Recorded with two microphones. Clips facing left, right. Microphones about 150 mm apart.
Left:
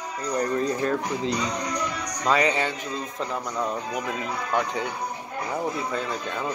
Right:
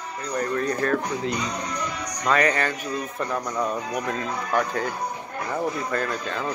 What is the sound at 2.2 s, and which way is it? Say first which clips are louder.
Speech: right 1 dB; 10° left (ahead or behind).